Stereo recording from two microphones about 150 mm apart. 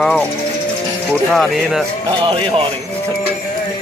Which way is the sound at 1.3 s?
Centre (ahead or behind).